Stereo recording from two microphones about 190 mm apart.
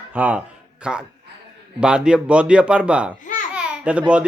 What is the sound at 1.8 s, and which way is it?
Speech, 5° right (ahead or behind).